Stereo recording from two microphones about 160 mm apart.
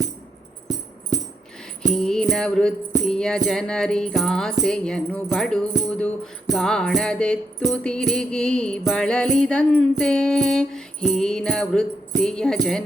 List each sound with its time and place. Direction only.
1.9 s music: 5° left (ahead or behind)